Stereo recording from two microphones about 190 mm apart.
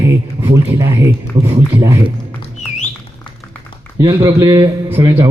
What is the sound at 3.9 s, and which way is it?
A man's voice, 25° right (ahead or behind).